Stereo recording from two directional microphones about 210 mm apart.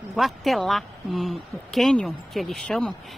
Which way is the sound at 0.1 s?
Centre (ahead or behind).